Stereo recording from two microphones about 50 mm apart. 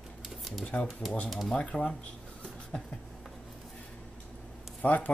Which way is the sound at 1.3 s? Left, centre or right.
Centre.